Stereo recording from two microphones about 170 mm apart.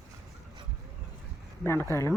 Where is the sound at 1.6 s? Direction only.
15° left (ahead or behind).